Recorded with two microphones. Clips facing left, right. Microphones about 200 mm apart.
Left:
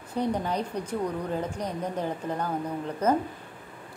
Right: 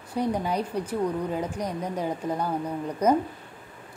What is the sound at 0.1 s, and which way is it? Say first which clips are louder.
A woman's voice: right 1 dB; 10° right (ahead or behind).